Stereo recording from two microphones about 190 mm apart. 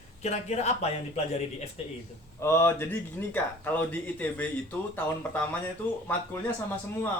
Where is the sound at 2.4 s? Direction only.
15° left (ahead or behind).